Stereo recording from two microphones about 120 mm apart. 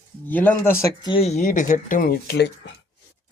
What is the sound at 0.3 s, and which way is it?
Speech, 15° left (ahead or behind).